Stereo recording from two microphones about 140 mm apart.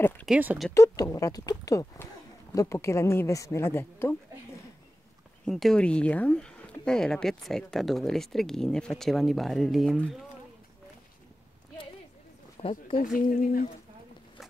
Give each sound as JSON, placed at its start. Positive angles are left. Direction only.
{"t": 0.3, "sound": "speech", "side_deg": -10}
{"t": 0.7, "sound": "a woman's voice", "side_deg": 25}
{"t": 5.4, "sound": "speech", "side_deg": 0}
{"t": 12.5, "sound": "a sound", "side_deg": 40}
{"t": 12.9, "sound": "speech", "side_deg": 80}